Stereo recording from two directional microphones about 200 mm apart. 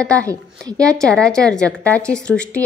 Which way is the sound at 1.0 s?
5° left (ahead or behind).